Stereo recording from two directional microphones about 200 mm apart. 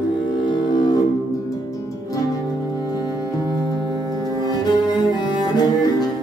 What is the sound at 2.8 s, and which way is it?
Music, 20° left (ahead or behind).